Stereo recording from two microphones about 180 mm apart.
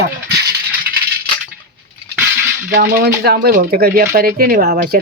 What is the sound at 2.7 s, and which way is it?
Speech, 60° right (ahead or behind).